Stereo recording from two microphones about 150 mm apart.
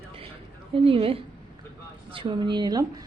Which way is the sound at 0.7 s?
40° right (ahead or behind).